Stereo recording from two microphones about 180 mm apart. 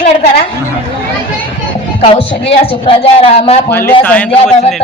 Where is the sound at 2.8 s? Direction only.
30° left (ahead or behind).